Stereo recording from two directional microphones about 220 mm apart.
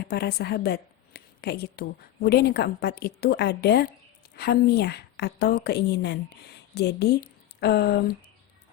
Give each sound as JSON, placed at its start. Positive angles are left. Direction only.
{"t": 0.0, "sound": "a woman's voice", "side_deg": 45}